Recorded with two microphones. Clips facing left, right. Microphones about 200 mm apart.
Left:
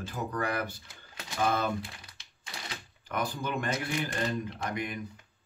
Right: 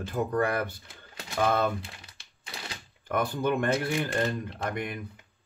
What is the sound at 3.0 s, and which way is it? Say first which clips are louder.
Speech: right 6 dB; 55° right (ahead or behind).